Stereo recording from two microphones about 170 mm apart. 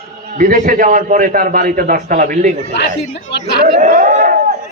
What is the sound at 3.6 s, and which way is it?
Speech, 55° right (ahead or behind).